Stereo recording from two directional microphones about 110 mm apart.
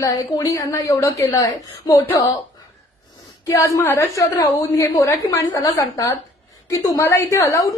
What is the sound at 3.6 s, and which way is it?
A woman's voice, 30° left (ahead or behind).